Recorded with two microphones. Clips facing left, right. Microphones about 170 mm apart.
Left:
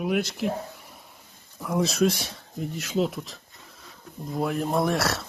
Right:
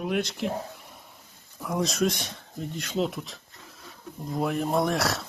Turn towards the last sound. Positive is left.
turn(degrees=0)  # may be behind; listen again after turning